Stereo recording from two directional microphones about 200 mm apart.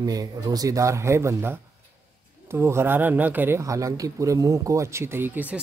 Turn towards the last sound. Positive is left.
turn(degrees=-10)  # may be behind; listen again after turning